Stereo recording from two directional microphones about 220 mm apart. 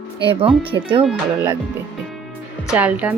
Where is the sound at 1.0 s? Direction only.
5° right (ahead or behind).